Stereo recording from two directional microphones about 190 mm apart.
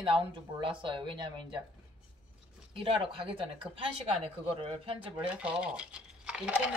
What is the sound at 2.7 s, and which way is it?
Speech, 25° right (ahead or behind).